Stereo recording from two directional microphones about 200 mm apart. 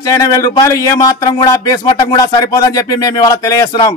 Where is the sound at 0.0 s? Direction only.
15° left (ahead or behind).